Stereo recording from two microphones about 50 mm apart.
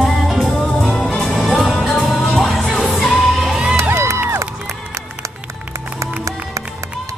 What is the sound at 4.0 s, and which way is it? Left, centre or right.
Music, right.